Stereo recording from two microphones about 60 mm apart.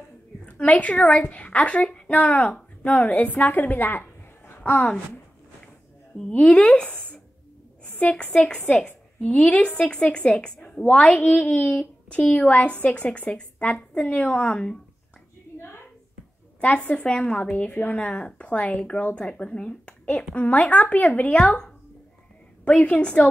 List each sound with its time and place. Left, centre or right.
0.5 s a woman's voice: left
6.3 s a woman's voice: centre
6.9 s a sound: left
7.8 s a woman's voice: left
16.6 s a woman's voice: left
22.7 s a woman's voice: centre